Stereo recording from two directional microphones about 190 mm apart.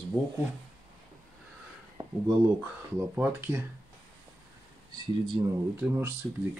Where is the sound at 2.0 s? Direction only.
20° right (ahead or behind).